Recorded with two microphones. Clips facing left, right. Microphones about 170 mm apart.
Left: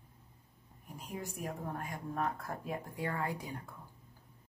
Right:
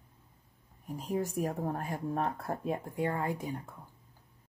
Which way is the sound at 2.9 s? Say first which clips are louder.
Right 4 dB; 20° right (ahead or behind).